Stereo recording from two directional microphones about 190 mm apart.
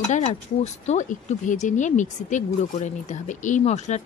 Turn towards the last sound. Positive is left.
turn(degrees=35)  # may be behind; listen again after turning